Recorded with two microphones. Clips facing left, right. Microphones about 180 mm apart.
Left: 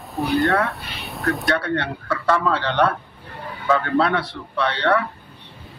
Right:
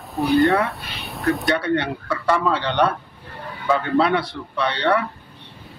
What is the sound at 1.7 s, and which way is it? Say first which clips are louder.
A man's voice: right 2 dB; 15° right (ahead or behind).